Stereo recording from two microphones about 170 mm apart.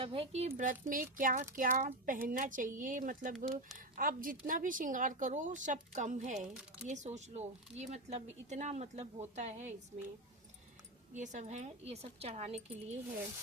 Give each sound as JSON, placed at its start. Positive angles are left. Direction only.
{"t": 0.0, "sound": "a woman's voice", "side_deg": -30}
{"t": 0.5, "sound": "speech", "side_deg": -50}
{"t": 6.5, "sound": "speech", "side_deg": -5}
{"t": 6.8, "sound": "speech", "side_deg": -45}
{"t": 11.1, "sound": "a woman's voice", "side_deg": -45}